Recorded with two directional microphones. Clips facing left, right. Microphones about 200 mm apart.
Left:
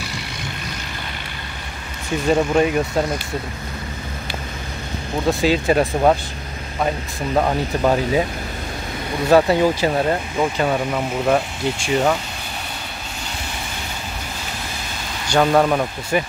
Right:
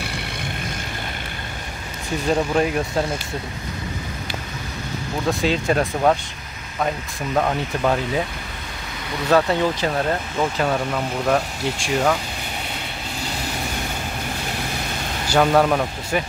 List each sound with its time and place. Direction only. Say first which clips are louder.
0.0 s vehicle: right 1 dB; 60° right (ahead or behind)
2.2 s speech: left 3 dB; centre (ahead or behind)
5.4 s speech: left 4 dB; 5° left (ahead or behind)
7.3 s speech: left 2 dB; 10° left (ahead or behind)
9.3 s speech: left 4 dB; 10° left (ahead or behind)
15.2 s speech: left 1 dB; centre (ahead or behind)